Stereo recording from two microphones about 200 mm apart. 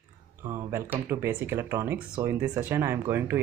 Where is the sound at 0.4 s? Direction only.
15° right (ahead or behind).